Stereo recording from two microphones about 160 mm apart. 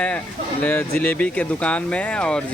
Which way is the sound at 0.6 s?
15° left (ahead or behind).